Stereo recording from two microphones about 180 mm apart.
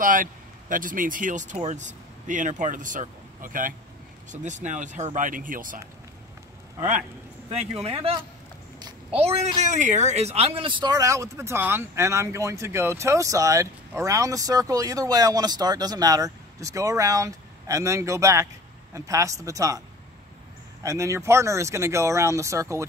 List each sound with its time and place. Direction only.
0.0 s speech: 50° right (ahead or behind)
7.8 s a woman's voice: 30° right (ahead or behind)
20.8 s speech: 15° right (ahead or behind)